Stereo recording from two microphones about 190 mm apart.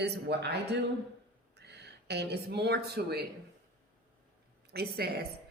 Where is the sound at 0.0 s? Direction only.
60° right (ahead or behind).